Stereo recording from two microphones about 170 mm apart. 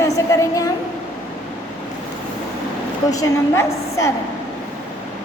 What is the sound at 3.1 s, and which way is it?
A woman's voice, 15° left (ahead or behind).